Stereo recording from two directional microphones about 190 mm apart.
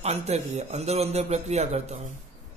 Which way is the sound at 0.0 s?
35° right (ahead or behind).